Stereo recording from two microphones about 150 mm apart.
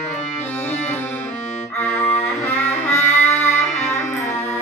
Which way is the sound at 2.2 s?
15° left (ahead or behind).